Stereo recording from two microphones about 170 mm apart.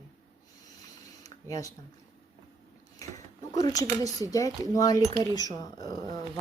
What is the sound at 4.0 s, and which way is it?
Speech, 20° left (ahead or behind).